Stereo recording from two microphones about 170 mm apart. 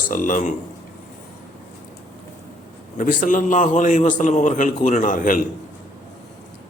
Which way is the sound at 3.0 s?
50° left (ahead or behind).